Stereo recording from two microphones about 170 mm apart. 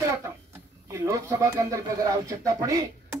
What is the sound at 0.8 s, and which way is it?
Speech, 15° right (ahead or behind).